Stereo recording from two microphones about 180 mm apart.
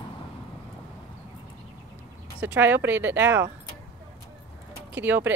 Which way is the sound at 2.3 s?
10° right (ahead or behind).